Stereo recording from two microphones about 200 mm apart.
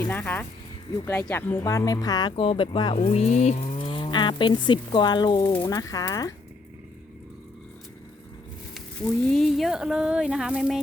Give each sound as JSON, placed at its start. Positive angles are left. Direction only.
{"t": 0.1, "sound": "speech", "side_deg": 10}
{"t": 9.3, "sound": "speech", "side_deg": 0}